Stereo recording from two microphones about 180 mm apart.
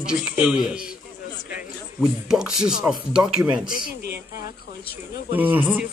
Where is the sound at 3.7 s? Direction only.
50° left (ahead or behind).